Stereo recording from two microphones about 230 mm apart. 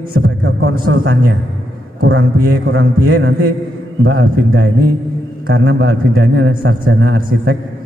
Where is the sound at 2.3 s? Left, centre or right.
Right.